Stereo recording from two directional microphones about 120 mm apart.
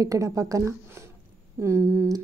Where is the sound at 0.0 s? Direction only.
25° right (ahead or behind).